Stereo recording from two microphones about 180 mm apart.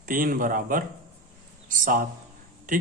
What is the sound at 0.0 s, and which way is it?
A man's voice, 50° right (ahead or behind).